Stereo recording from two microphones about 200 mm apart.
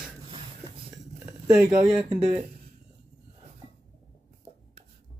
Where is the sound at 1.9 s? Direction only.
30° right (ahead or behind).